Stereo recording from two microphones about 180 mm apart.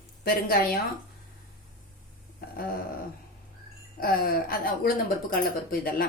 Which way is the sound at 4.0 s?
55° left (ahead or behind).